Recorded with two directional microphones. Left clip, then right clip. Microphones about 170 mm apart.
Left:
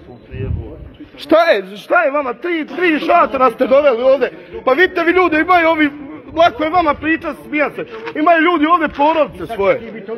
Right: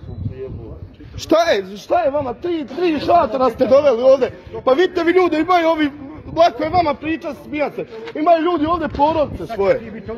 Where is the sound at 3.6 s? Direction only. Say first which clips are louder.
Right 2 dB; 40° right (ahead or behind).